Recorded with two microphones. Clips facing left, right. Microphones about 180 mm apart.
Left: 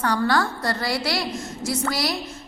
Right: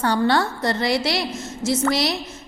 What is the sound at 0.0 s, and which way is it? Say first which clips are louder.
A woman's voice: right 2 dB; 25° right (ahead or behind).